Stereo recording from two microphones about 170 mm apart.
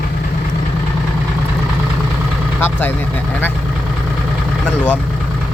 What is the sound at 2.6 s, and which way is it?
Speech, 10° left (ahead or behind).